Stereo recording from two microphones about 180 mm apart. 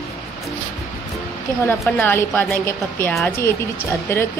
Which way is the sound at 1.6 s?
10° left (ahead or behind).